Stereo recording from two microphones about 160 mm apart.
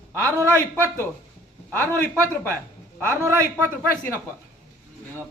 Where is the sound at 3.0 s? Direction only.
15° right (ahead or behind).